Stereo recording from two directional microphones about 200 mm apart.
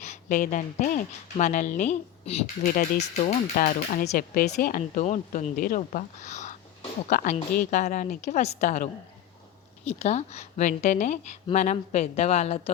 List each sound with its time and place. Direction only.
0.0 s speech: 35° left (ahead or behind)